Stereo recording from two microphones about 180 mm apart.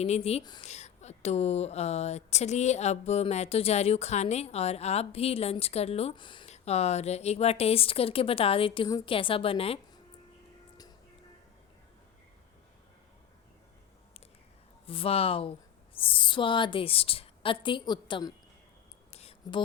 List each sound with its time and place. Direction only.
0.0 s speech: 35° left (ahead or behind)
14.8 s a woman's voice: 30° left (ahead or behind)
19.1 s a sound: 35° left (ahead or behind)